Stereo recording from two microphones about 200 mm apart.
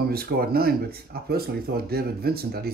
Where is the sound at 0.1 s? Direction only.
50° right (ahead or behind).